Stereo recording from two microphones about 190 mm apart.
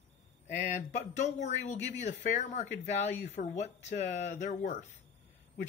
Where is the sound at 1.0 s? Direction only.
35° left (ahead or behind).